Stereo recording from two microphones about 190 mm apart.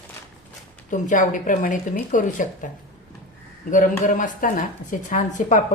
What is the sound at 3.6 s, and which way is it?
A woman's voice, 45° left (ahead or behind).